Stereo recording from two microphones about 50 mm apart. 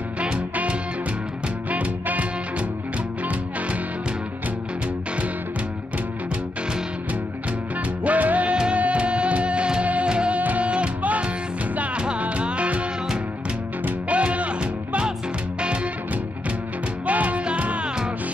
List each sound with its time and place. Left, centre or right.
0.2 s music: right
8.0 s music: right
14.0 s music: right
17.0 s music: right